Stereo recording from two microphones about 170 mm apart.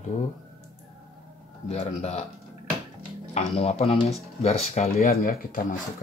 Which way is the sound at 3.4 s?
40° left (ahead or behind).